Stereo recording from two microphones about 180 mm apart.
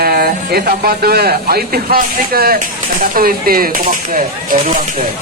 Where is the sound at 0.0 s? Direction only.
55° right (ahead or behind).